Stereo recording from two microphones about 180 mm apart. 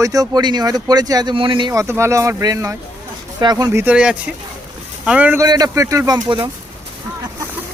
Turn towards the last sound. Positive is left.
turn(degrees=-20)  # may be behind; listen again after turning